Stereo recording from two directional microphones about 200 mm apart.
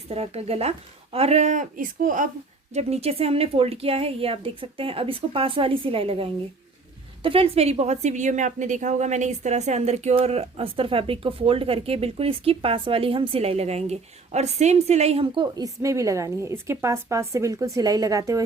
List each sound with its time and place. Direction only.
0.1 s a woman's voice: 30° right (ahead or behind)